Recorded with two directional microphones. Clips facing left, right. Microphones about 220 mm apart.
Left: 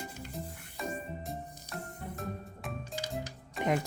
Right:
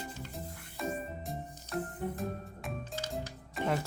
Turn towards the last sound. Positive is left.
turn(degrees=0)  # may be behind; listen again after turning